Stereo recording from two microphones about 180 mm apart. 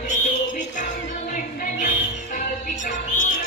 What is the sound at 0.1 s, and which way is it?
Music, 45° left (ahead or behind).